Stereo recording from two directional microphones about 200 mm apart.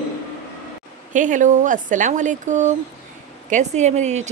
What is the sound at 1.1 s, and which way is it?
Speech, 40° right (ahead or behind).